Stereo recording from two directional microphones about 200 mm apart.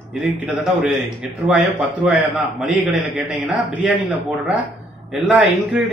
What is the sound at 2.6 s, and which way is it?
Speech, centre (ahead or behind).